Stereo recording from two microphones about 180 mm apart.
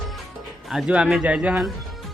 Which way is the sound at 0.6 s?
Centre (ahead or behind).